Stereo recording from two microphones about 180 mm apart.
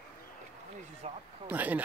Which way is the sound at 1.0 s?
35° right (ahead or behind).